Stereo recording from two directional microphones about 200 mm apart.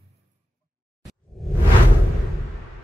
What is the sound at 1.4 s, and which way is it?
Whoosh, centre (ahead or behind).